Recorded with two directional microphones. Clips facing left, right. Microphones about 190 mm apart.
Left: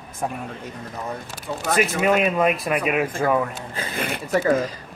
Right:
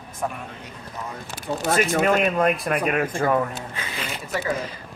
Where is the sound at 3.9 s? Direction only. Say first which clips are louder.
Left 7 dB; 60° left (ahead or behind).